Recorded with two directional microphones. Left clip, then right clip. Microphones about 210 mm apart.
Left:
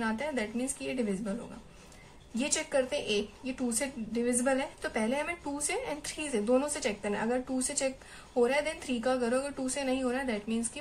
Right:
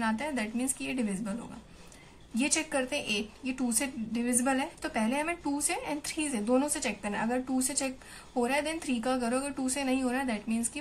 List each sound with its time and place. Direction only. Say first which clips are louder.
0.0 s a woman's voice: right 1 dB; 10° right (ahead or behind)
2.3 s a woman's voice: even; 5° right (ahead or behind)